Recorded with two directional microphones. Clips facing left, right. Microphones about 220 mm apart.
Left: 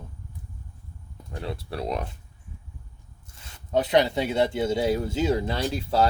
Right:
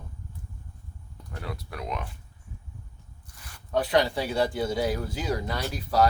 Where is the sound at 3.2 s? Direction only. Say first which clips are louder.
Left 2 dB; 25° left (ahead or behind).